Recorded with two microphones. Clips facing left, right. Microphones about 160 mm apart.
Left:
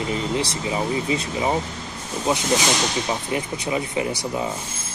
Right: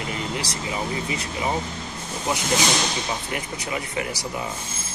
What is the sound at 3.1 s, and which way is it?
Speech, 25° left (ahead or behind).